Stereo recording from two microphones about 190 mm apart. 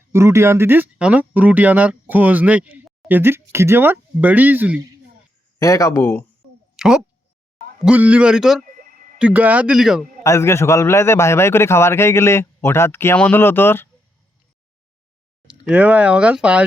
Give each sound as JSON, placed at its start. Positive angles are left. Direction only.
{"t": 0.1, "sound": "speech", "side_deg": -15}
{"t": 5.5, "sound": "a man's voice", "side_deg": 15}
{"t": 6.7, "sound": "a sound", "side_deg": -5}
{"t": 7.9, "sound": "a man's voice", "side_deg": -10}
{"t": 8.6, "sound": "a sound", "side_deg": -45}
{"t": 9.1, "sound": "a man's voice", "side_deg": -5}
{"t": 10.2, "sound": "a man's voice", "side_deg": 15}
{"t": 15.4, "sound": "speech", "side_deg": -5}